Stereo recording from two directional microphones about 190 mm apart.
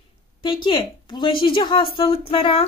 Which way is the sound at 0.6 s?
25° left (ahead or behind).